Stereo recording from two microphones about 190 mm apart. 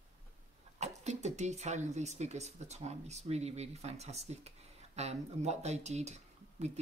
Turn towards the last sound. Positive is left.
turn(degrees=-35)  # may be behind; listen again after turning